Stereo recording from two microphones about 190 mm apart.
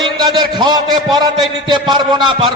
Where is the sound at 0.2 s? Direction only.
20° right (ahead or behind).